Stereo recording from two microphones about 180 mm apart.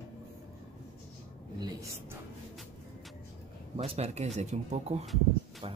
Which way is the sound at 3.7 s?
35° right (ahead or behind).